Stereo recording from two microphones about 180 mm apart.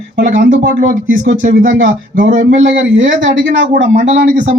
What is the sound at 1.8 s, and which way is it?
Speech, 90° right.